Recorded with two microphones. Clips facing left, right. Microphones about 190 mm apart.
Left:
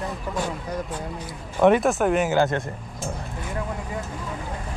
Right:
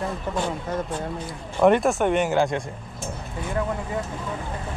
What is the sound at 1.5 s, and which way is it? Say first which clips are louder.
Speech: even; centre (ahead or behind).